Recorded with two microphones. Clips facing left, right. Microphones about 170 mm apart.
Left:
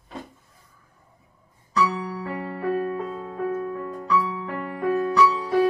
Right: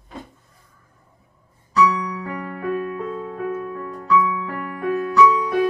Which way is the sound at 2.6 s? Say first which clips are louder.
Even; 30° left (ahead or behind).